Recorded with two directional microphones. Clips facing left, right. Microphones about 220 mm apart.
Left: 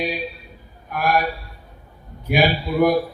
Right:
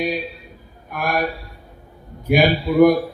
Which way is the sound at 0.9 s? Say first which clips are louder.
Left 1 dB; 50° right (ahead or behind).